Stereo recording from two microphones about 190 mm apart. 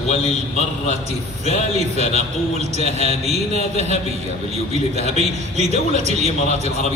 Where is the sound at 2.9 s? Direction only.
35° right (ahead or behind).